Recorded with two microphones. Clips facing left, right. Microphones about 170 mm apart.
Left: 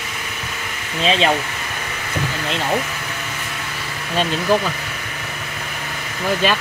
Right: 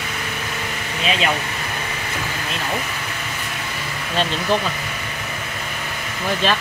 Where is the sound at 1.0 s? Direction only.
30° left (ahead or behind).